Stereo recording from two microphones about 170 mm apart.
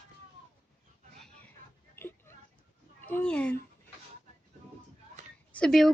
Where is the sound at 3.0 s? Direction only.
5° left (ahead or behind).